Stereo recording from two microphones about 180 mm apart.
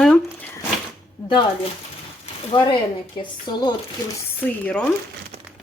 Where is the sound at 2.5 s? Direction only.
25° left (ahead or behind).